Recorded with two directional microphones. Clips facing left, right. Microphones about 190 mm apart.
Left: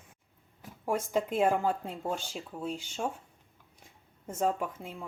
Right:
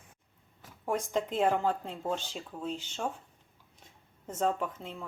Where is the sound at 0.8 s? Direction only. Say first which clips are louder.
Left 1 dB; 5° left (ahead or behind).